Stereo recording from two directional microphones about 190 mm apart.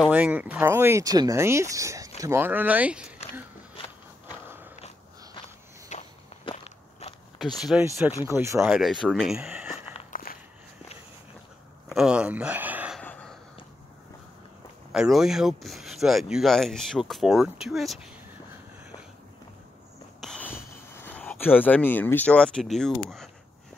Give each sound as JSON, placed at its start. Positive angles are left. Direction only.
{"t": 0.0, "sound": "speech", "side_deg": -10}
{"t": 5.9, "sound": "walk", "side_deg": 35}
{"t": 7.7, "sound": "speech", "side_deg": 0}
{"t": 8.3, "sound": "speech", "side_deg": -15}
{"t": 8.6, "sound": "speech", "side_deg": 0}
{"t": 10.3, "sound": "walk", "side_deg": 50}
{"t": 11.9, "sound": "speech", "side_deg": -5}
{"t": 13.0, "sound": "gasp", "side_deg": 10}
{"t": 14.9, "sound": "speech", "side_deg": 0}
{"t": 20.2, "sound": "a sound", "side_deg": 5}